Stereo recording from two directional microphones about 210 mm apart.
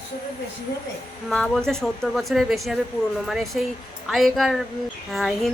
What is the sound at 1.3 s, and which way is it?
Speech, 5° left (ahead or behind).